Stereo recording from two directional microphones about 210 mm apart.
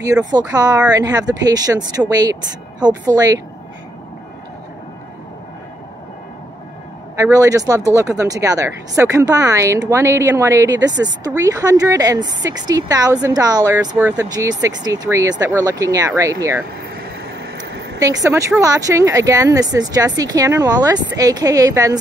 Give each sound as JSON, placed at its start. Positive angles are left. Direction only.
{"t": 0.0, "sound": "speech", "side_deg": -15}
{"t": 7.2, "sound": "speech", "side_deg": -15}
{"t": 17.6, "sound": "a sound", "side_deg": -55}
{"t": 17.9, "sound": "speech", "side_deg": -15}